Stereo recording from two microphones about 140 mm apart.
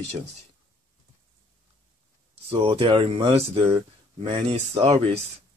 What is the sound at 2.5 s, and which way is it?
Speech, 40° right (ahead or behind).